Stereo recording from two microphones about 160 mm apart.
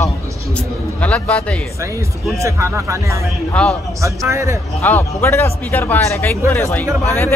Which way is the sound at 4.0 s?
20° right (ahead or behind).